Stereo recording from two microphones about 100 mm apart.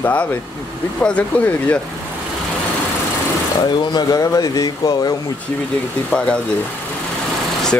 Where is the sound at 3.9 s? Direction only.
40° left (ahead or behind).